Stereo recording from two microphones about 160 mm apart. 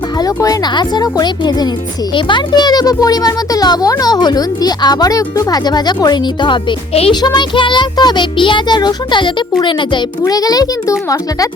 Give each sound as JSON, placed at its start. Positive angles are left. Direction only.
{"t": 0.2, "sound": "a child's voice", "side_deg": 25}